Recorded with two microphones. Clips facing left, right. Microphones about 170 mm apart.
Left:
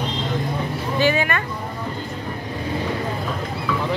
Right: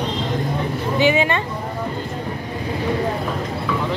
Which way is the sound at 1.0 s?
20° right (ahead or behind).